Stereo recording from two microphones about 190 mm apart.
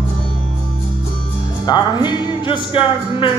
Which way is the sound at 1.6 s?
20° left (ahead or behind).